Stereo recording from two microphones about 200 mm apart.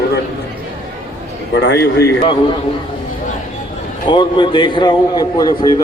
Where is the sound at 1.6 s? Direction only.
55° left (ahead or behind).